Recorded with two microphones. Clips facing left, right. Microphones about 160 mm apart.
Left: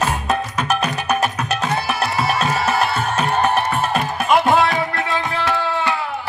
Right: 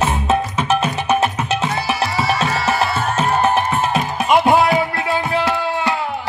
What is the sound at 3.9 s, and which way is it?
Music, 20° right (ahead or behind).